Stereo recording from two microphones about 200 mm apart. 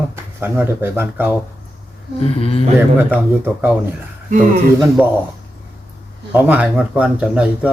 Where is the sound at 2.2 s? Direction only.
30° left (ahead or behind).